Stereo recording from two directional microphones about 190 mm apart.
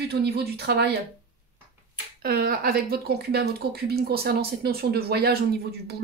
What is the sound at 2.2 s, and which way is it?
A woman's voice, 50° right (ahead or behind).